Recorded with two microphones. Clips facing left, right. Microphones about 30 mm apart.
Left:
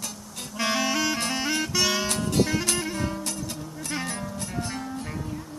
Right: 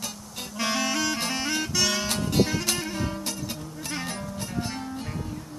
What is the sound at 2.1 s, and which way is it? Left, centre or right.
Music, centre.